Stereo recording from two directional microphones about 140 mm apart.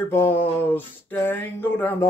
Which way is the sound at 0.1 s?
15° left (ahead or behind).